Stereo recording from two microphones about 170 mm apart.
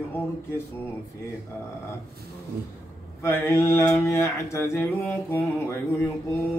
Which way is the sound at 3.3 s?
15° left (ahead or behind).